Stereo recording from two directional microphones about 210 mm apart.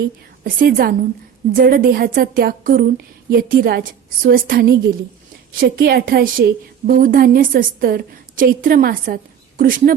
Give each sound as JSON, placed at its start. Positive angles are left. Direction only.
{"t": 0.4, "sound": "a woman's voice", "side_deg": -45}